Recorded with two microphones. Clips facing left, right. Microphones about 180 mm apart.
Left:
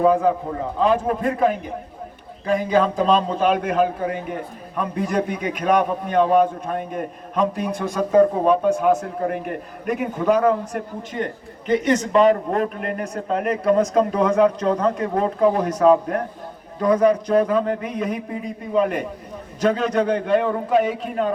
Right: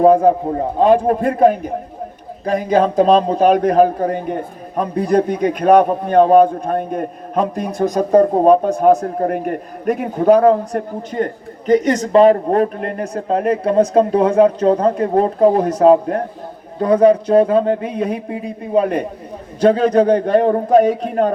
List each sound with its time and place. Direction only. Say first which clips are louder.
0.0 s a man's voice: right 6 dB; 40° right (ahead or behind)